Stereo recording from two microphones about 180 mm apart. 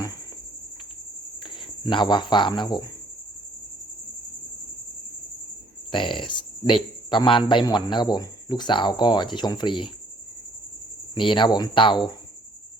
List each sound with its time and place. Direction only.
1.5 s speech: 25° left (ahead or behind)
5.9 s a man's voice: 25° left (ahead or behind)
11.1 s a man's voice: 25° left (ahead or behind)